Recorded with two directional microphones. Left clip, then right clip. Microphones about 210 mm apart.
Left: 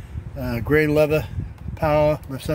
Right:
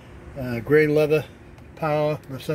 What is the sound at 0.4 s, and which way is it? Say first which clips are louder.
Speech: right 1 dB; 20° left (ahead or behind).